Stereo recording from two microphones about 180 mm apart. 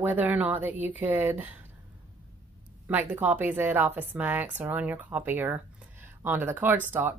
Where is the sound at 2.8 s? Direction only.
10° right (ahead or behind).